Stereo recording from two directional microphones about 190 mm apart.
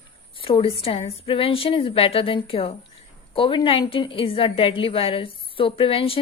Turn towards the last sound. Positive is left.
turn(degrees=30)  # may be behind; listen again after turning